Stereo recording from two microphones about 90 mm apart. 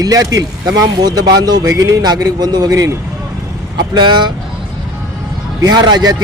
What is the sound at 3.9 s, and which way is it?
Speech, 55° right (ahead or behind).